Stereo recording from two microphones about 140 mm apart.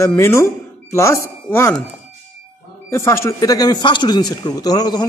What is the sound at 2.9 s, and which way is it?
A man's voice, 20° left (ahead or behind).